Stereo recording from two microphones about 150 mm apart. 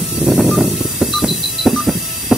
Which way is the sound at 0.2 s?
Centre (ahead or behind).